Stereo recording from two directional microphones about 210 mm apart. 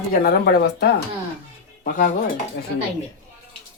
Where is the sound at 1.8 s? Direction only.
40° left (ahead or behind).